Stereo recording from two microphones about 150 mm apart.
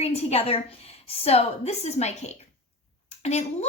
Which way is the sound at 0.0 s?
45° left (ahead or behind).